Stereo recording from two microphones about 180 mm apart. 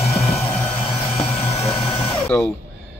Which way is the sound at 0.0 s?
35° left (ahead or behind).